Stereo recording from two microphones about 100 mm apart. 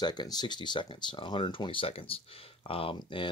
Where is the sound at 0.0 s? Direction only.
45° left (ahead or behind); by 3.0 s 65° left (ahead or behind).